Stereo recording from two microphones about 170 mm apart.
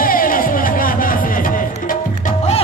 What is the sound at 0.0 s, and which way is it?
Music, 55° left (ahead or behind).